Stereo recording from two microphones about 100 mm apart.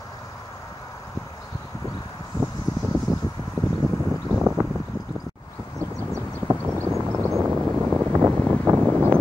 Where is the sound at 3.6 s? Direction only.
35° left (ahead or behind).